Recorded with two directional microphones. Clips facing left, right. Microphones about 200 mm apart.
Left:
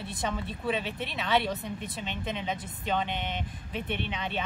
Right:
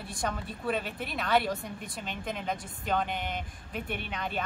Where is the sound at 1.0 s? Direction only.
Centre (ahead or behind).